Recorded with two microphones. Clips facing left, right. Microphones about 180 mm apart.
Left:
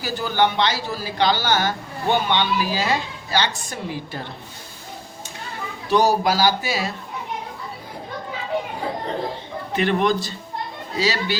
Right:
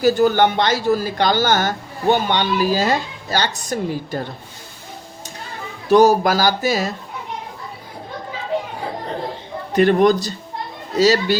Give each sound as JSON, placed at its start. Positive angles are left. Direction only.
{"t": 0.0, "sound": "a woman's voice", "side_deg": -45}
{"t": 5.9, "sound": "a woman's voice", "side_deg": -45}
{"t": 9.7, "sound": "a man's voice", "side_deg": -40}